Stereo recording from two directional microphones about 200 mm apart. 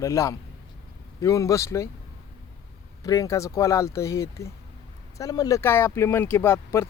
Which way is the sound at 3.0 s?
15° left (ahead or behind).